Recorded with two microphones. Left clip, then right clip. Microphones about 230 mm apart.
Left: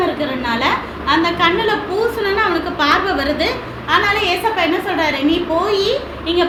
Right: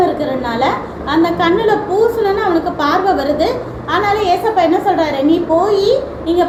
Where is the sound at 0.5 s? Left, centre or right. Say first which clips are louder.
Right 1 dB; centre.